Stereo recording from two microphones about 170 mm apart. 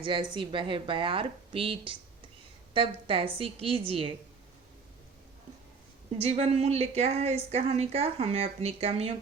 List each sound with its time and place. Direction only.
0.0 s a woman's voice: 30° right (ahead or behind)
6.1 s a woman's voice: 35° right (ahead or behind)